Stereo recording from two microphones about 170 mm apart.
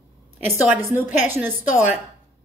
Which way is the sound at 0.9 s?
10° right (ahead or behind).